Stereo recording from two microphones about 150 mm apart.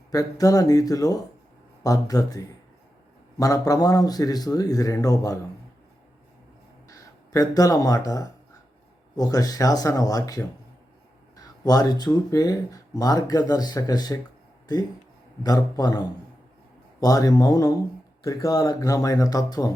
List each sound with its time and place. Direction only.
0.1 s speech: 25° left (ahead or behind)
6.8 s speech: 25° left (ahead or behind)
15.4 s speech: 25° left (ahead or behind)